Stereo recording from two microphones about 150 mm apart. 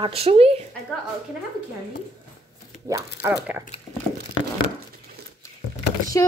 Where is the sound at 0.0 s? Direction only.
40° right (ahead or behind).